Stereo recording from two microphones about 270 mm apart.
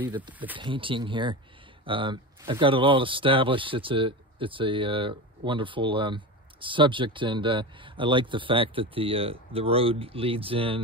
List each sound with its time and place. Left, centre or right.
0.0 s speech: centre
0.3 s speech: centre
0.6 s speech: centre